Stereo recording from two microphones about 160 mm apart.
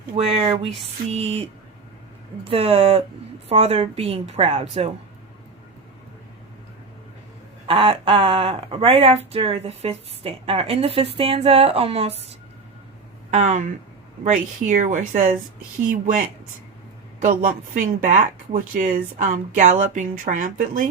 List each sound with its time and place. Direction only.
0.2 s speech: 40° right (ahead or behind)
7.7 s speech: 35° right (ahead or behind)
13.3 s a woman's voice: 50° right (ahead or behind)